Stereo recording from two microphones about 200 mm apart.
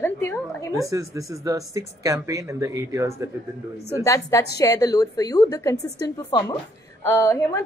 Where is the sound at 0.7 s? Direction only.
15° right (ahead or behind).